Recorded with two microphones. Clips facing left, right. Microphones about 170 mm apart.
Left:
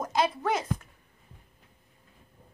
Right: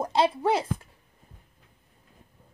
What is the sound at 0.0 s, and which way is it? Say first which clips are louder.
Speech: right 4 dB; 30° right (ahead or behind).